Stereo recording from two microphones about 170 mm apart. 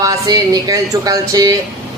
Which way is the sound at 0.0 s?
20° right (ahead or behind).